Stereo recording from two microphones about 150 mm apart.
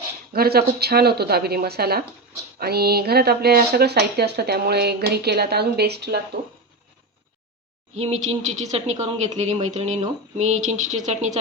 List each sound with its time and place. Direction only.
0.3 s speech: 90° right
7.9 s speech: 45° right (ahead or behind)